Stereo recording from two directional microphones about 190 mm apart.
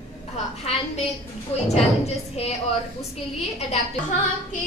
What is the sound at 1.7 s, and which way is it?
Speech, 35° left (ahead or behind).